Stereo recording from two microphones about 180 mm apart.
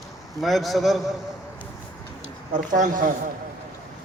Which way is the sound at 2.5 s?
45° right (ahead or behind).